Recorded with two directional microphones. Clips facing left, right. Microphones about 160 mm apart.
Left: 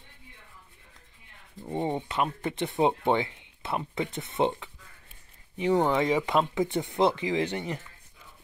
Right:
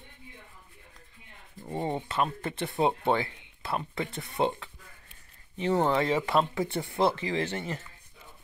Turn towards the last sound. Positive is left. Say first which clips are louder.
# left 2 dB
turn(degrees=15)  # may be behind; listen again after turning